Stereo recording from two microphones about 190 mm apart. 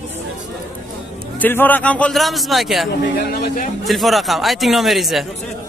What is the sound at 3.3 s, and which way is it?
Speech, 45° left (ahead or behind).